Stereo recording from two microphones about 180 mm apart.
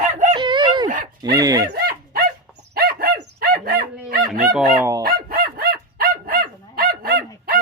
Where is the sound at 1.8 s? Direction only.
55° right (ahead or behind).